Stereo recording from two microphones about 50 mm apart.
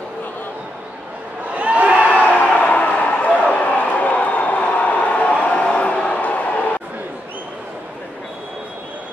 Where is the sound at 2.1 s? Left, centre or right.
Left.